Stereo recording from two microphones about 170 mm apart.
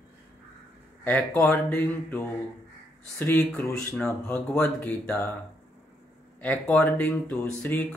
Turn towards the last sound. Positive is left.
turn(degrees=10)  # may be behind; listen again after turning